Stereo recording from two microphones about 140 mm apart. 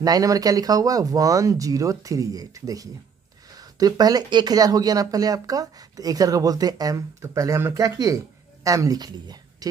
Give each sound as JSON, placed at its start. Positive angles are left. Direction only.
{"t": 0.0, "sound": "a woman's voice", "side_deg": -25}